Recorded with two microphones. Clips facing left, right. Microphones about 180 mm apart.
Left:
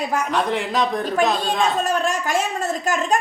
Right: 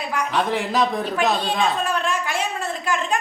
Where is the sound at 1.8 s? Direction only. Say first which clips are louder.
Left 2 dB; 40° left (ahead or behind).